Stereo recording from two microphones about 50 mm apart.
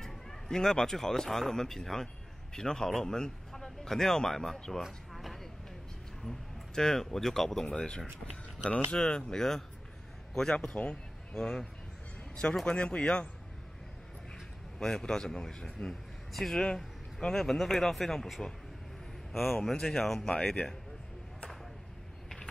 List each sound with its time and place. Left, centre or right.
0.0 s a man's voice: centre
5.1 s vehicle: centre
6.2 s a man's voice: centre
10.7 s speech: centre
12.6 s speech: left
14.3 s a man's voice: centre